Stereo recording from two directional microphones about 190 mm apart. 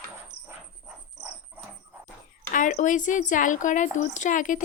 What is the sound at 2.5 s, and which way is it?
Speech, 40° left (ahead or behind).